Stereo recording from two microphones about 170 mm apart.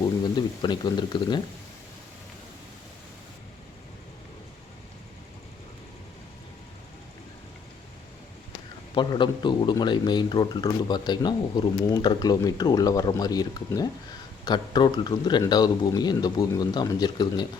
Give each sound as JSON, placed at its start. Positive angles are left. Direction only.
{"t": 0.3, "sound": "speech", "side_deg": 25}
{"t": 9.0, "sound": "speech", "side_deg": 25}